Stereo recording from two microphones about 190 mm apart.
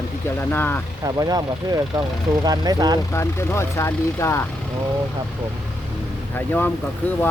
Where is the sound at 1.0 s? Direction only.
20° right (ahead or behind).